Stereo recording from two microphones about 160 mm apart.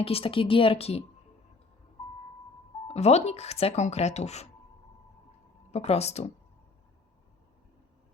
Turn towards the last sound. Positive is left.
turn(degrees=40)  # may be behind; listen again after turning